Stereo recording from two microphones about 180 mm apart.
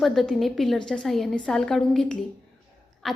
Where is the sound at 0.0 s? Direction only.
Centre (ahead or behind).